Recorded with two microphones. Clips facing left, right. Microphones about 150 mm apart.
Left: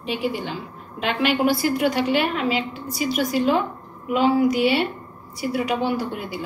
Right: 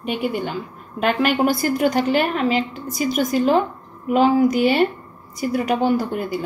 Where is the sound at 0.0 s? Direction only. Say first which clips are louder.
Right 2 dB; 55° right (ahead or behind).